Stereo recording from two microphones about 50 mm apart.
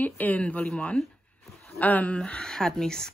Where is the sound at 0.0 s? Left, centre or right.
Left.